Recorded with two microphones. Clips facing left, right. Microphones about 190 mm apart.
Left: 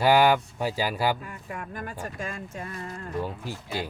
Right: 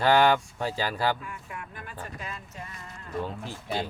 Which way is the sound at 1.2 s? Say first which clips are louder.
Left 3 dB; 40° left (ahead or behind).